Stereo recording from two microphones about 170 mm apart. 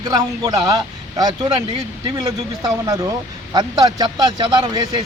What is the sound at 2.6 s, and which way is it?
Speech, 20° right (ahead or behind).